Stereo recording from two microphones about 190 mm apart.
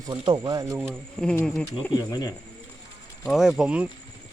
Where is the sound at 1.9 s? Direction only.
20° left (ahead or behind).